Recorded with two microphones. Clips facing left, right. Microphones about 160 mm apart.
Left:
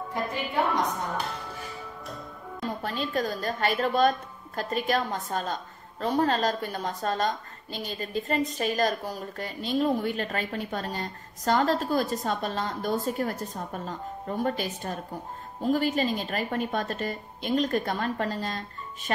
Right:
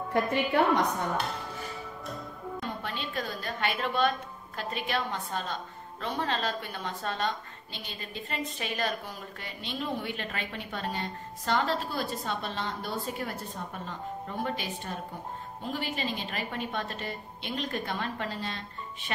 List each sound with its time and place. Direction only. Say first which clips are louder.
0.1 s a woman's voice: right 6 dB; 65° right (ahead or behind)
2.8 s a woman's voice: left 6 dB; 40° left (ahead or behind)